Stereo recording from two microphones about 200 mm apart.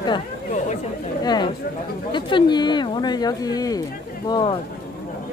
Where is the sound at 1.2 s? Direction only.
20° left (ahead or behind).